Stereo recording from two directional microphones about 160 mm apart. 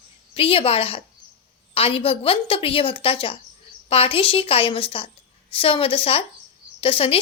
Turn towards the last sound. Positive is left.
turn(degrees=35)  # may be behind; listen again after turning